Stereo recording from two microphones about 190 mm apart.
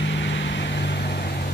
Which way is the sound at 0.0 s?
70° left (ahead or behind).